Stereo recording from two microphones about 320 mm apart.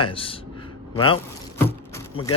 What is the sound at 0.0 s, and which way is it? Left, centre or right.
Speech, centre.